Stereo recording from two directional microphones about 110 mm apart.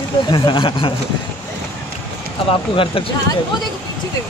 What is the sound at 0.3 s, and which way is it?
Speech, 45° left (ahead or behind).